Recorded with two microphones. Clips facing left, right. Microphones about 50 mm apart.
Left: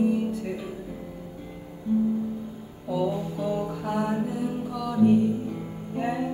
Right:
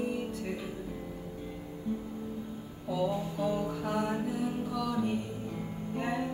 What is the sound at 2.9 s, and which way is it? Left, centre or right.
Music, centre.